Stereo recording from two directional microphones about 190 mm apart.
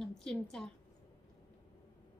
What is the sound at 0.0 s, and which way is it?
Speech, centre (ahead or behind).